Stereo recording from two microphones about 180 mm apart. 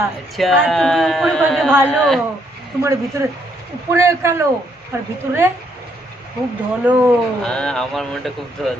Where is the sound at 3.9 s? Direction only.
15° right (ahead or behind).